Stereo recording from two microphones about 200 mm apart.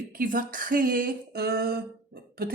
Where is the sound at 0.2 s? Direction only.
45° right (ahead or behind).